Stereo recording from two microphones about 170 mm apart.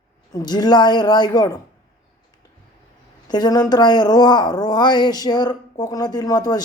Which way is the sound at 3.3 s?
25° left (ahead or behind).